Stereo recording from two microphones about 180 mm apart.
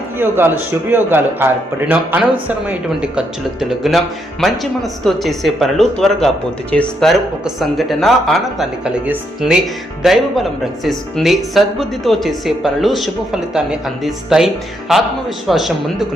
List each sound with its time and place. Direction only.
0.2 s a man's voice: 10° right (ahead or behind)